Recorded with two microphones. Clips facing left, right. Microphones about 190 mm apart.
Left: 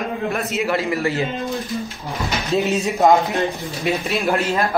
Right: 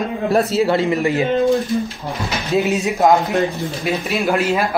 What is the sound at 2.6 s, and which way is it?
Speech, centre (ahead or behind).